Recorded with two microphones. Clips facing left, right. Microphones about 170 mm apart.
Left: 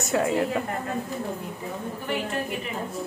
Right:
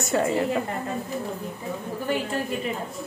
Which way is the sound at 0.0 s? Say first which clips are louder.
Even; centre (ahead or behind).